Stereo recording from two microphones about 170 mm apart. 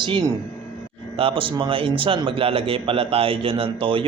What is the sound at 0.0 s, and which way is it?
A man's voice, 25° right (ahead or behind).